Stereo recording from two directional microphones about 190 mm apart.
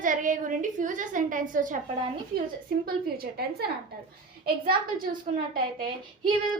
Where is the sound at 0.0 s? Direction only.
45° right (ahead or behind).